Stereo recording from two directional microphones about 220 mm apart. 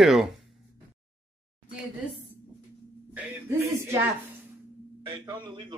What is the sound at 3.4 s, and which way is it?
Speech, 10° right (ahead or behind).